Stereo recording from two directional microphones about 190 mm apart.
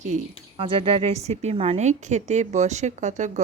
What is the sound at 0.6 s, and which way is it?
A woman's voice, 30° right (ahead or behind).